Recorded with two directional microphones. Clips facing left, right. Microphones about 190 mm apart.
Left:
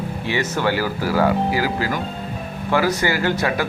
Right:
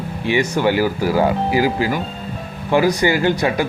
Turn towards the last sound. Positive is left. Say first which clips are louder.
# right 3 dB
turn(degrees=-15)  # may be behind; listen again after turning